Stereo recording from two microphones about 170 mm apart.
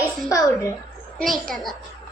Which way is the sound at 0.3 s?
15° left (ahead or behind).